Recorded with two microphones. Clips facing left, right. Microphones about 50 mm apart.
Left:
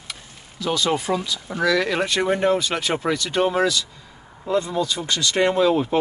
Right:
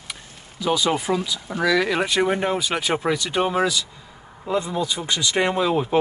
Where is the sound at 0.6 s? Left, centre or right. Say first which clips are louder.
Right 1 dB; centre.